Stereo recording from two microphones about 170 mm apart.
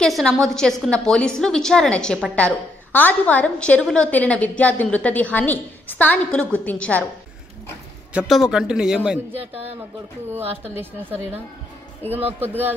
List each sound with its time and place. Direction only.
0.0 s a woman's voice: centre (ahead or behind)
8.1 s a woman's voice: 5° right (ahead or behind)
12.4 s speech: 10° right (ahead or behind)